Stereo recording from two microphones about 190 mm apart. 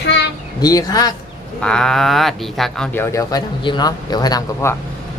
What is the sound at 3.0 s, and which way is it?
Speech, 20° left (ahead or behind).